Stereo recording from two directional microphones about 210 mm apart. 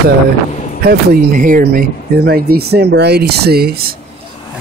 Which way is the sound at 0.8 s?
40° right (ahead or behind).